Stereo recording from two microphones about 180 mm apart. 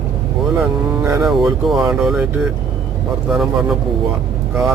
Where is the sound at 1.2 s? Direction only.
Centre (ahead or behind).